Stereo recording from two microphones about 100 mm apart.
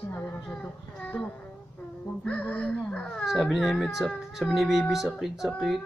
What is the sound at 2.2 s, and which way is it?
Speech, 15° left (ahead or behind).